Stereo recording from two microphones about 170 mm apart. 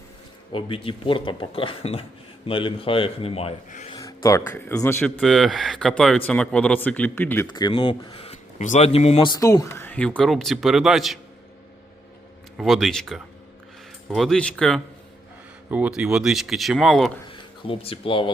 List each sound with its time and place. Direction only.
0.5 s speech: 30° left (ahead or behind)
3.7 s speech: 45° left (ahead or behind)
3.9 s speech: 20° left (ahead or behind)
5.2 s speech: centre (ahead or behind)
7.4 s speech: 25° left (ahead or behind); by 11.2 s centre (ahead or behind)
12.5 s speech: centre (ahead or behind)
17.2 s speech: 30° left (ahead or behind)